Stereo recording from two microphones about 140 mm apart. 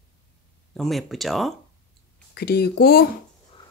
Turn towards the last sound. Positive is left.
turn(degrees=90)